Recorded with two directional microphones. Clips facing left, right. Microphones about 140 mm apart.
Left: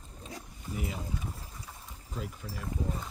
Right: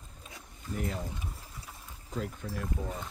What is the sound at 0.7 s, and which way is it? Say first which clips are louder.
Speech: right 2 dB; 5° left (ahead or behind).